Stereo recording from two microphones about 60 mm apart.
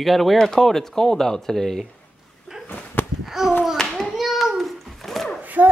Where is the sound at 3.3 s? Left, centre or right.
Centre.